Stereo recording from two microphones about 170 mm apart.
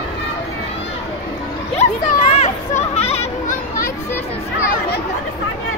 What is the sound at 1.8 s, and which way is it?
Children playing, 40° left (ahead or behind).